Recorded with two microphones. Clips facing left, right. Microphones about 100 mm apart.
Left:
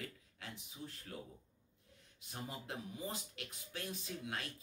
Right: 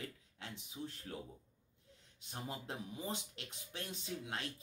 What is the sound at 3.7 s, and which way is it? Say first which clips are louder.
Speech: right 1 dB; 30° right (ahead or behind).